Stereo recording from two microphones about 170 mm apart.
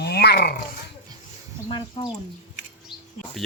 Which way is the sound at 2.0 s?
30° left (ahead or behind).